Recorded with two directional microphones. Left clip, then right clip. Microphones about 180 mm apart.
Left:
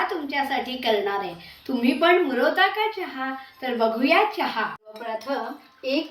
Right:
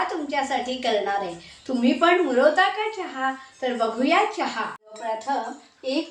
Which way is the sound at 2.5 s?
10° right (ahead or behind).